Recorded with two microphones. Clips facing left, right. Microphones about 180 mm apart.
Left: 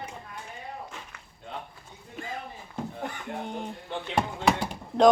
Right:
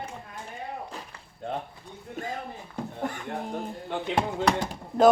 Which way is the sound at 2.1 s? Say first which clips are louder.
Right 4 dB; 55° right (ahead or behind).